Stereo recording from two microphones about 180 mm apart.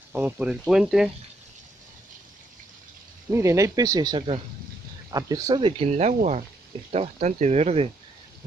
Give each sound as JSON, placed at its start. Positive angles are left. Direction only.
{"t": 0.1, "sound": "speech", "side_deg": -10}
{"t": 3.3, "sound": "speech", "side_deg": -15}